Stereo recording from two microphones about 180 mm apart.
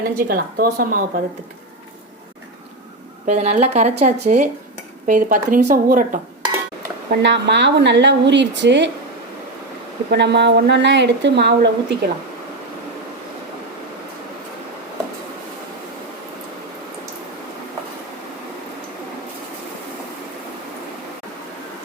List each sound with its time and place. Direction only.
0.0 s speech: 50° right (ahead or behind)
3.2 s a woman's voice: 40° right (ahead or behind)
7.2 s a woman's voice: 75° right (ahead or behind)
10.1 s a woman's voice: 70° right (ahead or behind)